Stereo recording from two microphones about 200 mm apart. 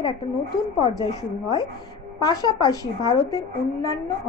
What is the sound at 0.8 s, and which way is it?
A woman's voice, 20° left (ahead or behind).